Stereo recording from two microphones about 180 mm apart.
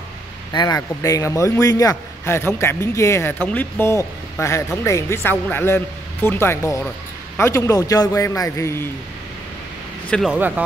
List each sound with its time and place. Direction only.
0.5 s a man's voice: 20° left (ahead or behind)
10.0 s speech: centre (ahead or behind)